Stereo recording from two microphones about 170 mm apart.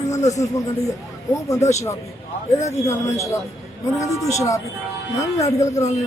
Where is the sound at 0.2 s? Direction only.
45° left (ahead or behind).